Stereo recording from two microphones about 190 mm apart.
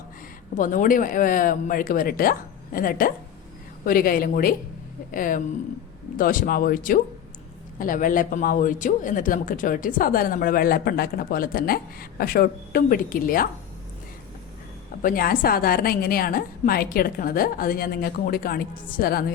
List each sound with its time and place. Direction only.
0.5 s speech: 45° left (ahead or behind)
15.0 s speech: 50° left (ahead or behind)